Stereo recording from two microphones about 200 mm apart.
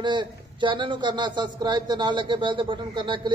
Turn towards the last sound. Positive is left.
turn(degrees=-25)  # may be behind; listen again after turning